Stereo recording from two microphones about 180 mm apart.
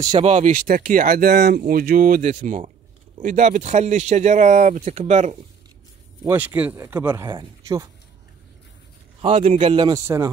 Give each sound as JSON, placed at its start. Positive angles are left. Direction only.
{"t": 0.2, "sound": "speech", "side_deg": -40}
{"t": 6.2, "sound": "speech", "side_deg": -10}
{"t": 9.2, "sound": "a man's voice", "side_deg": -40}